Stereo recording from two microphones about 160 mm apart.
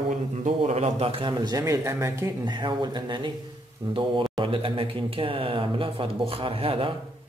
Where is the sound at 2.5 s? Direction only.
30° right (ahead or behind).